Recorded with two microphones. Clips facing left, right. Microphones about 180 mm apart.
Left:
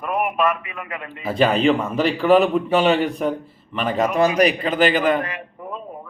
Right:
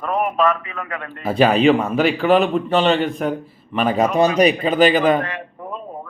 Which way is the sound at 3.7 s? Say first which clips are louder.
Right 3 dB; 10° right (ahead or behind).